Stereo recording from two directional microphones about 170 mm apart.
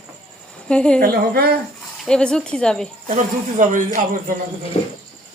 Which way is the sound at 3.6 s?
50° right (ahead or behind).